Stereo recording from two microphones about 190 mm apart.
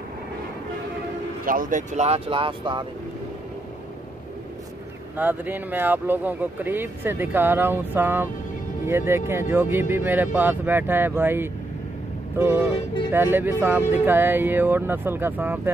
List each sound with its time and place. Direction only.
1.4 s speech: 45° right (ahead or behind); by 2.9 s 25° right (ahead or behind)
5.1 s speech: 10° right (ahead or behind)